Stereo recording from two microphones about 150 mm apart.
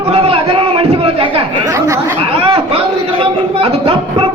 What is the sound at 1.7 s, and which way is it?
Chatter, 20° right (ahead or behind).